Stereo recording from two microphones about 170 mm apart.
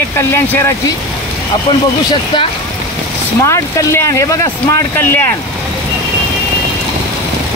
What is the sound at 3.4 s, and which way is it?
Speech, 15° left (ahead or behind).